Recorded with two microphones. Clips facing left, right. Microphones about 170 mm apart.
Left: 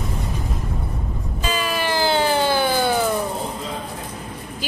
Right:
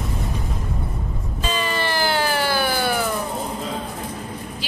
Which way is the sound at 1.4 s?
5° left (ahead or behind).